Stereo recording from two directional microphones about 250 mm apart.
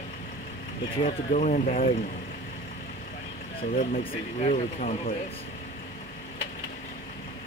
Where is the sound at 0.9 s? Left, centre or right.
Left.